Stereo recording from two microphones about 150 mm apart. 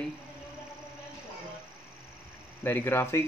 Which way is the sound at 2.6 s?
15° left (ahead or behind).